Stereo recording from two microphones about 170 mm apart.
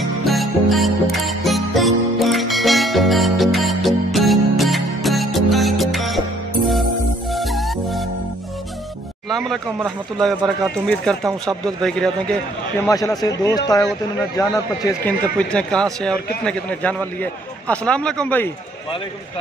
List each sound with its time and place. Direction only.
0.2 s music: centre (ahead or behind)
9.3 s a sound: centre (ahead or behind)
9.8 s speech: centre (ahead or behind)
12.8 s a man's voice: 20° left (ahead or behind)
14.3 s a man's voice: 20° left (ahead or behind)
15.0 s a man's voice: 5° left (ahead or behind)